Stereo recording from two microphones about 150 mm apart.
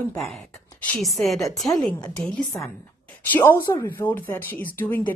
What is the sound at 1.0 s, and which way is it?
A woman's voice, centre (ahead or behind).